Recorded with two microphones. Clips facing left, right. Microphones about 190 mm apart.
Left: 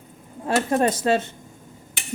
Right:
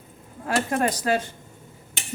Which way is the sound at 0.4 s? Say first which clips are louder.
Left 3 dB; 25° left (ahead or behind).